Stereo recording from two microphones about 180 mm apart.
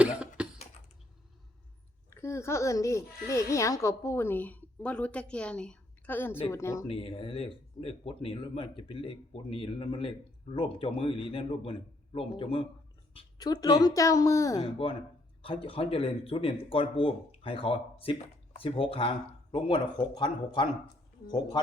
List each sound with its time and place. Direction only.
0.0 s cough: 5° right (ahead or behind)
2.0 s a child's voice: 15° left (ahead or behind)
6.8 s speech: 30° left (ahead or behind)
15.4 s speech: 30° left (ahead or behind)